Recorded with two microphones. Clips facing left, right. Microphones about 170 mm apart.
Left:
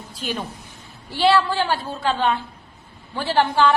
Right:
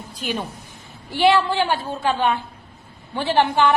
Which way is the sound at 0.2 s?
10° right (ahead or behind).